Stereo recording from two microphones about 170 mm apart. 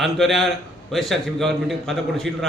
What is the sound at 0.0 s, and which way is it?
A man's voice, centre (ahead or behind).